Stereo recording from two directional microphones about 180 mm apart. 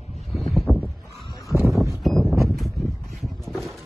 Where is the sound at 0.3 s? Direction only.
Centre (ahead or behind).